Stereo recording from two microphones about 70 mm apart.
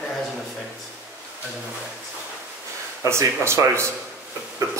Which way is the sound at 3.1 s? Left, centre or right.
Right.